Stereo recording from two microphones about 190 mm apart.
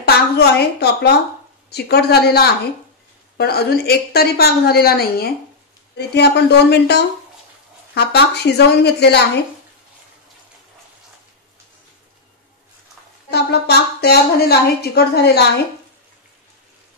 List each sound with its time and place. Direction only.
0.0 s a woman's voice: 60° left (ahead or behind)
13.3 s a woman's voice: 60° left (ahead or behind)